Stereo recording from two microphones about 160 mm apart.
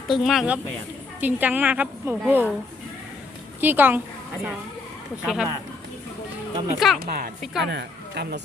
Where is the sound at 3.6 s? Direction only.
10° right (ahead or behind).